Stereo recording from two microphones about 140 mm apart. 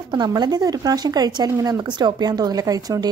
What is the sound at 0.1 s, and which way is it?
Speech, 30° right (ahead or behind).